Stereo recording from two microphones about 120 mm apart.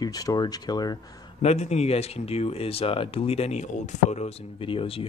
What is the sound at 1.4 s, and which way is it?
Speech, 65° left (ahead or behind).